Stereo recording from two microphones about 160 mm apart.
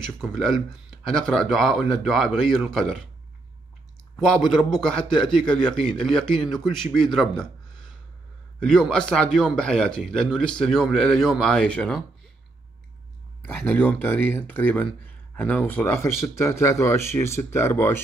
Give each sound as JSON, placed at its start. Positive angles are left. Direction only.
{"t": 0.0, "sound": "a man's voice", "side_deg": 5}
{"t": 4.2, "sound": "a man's voice", "side_deg": 5}
{"t": 13.5, "sound": "speech", "side_deg": 10}